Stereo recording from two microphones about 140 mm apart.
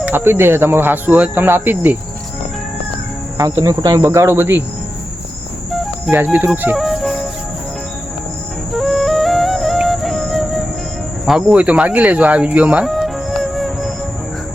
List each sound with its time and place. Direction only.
0.0 s speech: 15° right (ahead or behind)
3.3 s cricket: 25° right (ahead or behind)
6.1 s speech: 10° right (ahead or behind)
8.7 s music: centre (ahead or behind)
11.3 s speech: 5° right (ahead or behind)